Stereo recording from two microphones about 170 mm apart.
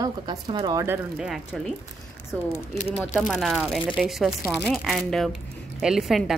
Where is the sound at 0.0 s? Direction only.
25° right (ahead or behind).